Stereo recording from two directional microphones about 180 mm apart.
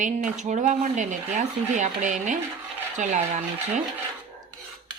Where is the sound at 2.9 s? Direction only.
45° right (ahead or behind).